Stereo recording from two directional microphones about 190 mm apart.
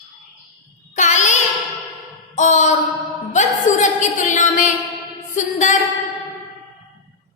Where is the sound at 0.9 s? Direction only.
40° left (ahead or behind).